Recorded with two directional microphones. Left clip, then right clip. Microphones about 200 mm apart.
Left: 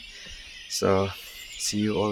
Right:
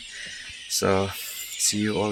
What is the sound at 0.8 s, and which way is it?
Speech, 5° right (ahead or behind).